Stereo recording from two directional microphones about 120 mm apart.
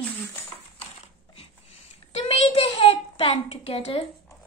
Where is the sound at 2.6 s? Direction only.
50° left (ahead or behind).